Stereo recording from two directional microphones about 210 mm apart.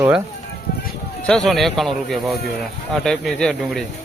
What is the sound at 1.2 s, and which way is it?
Speech, 5° left (ahead or behind).